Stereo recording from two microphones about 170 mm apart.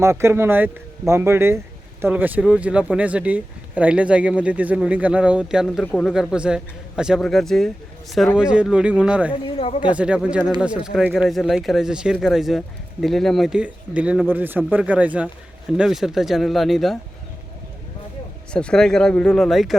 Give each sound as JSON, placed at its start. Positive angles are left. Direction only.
{"t": 0.0, "sound": "speech", "side_deg": -15}
{"t": 6.1, "sound": "speech", "side_deg": -5}
{"t": 9.3, "sound": "speech", "side_deg": 30}
{"t": 9.9, "sound": "speech", "side_deg": -5}
{"t": 18.5, "sound": "speech", "side_deg": 5}